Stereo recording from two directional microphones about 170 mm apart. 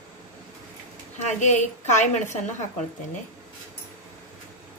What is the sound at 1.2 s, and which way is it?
A woman's voice, 45° left (ahead or behind).